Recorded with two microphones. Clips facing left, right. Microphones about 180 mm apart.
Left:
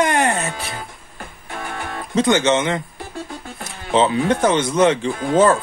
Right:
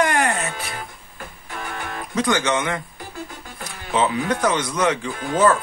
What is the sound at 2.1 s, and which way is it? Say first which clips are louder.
Speech: left 5 dB; 25° left (ahead or behind).